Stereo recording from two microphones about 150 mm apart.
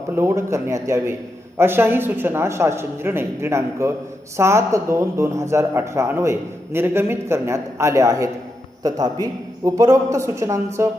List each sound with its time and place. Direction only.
0.2 s a man's voice: 15° right (ahead or behind)